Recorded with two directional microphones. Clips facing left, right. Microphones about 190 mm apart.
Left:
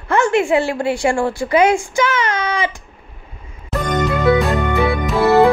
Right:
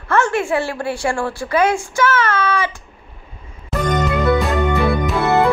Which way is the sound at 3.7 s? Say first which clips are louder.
Even; centre (ahead or behind).